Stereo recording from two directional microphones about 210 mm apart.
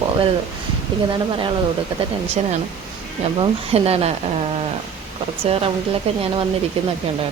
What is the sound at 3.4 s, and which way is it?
Speech, 30° right (ahead or behind).